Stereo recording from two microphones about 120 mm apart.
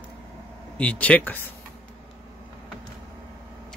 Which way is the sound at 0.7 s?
10° left (ahead or behind).